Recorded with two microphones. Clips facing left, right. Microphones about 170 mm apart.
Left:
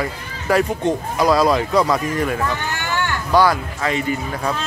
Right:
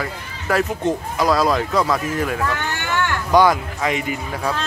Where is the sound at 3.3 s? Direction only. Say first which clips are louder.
Right 1 dB; 20° right (ahead or behind).